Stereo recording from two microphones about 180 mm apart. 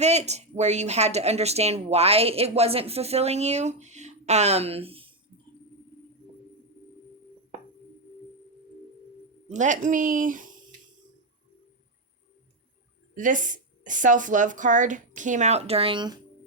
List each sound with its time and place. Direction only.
0.0 s a woman's voice: 40° right (ahead or behind)
9.5 s speech: 45° right (ahead or behind)
13.1 s speech: 45° right (ahead or behind); by 16.1 s 25° right (ahead or behind)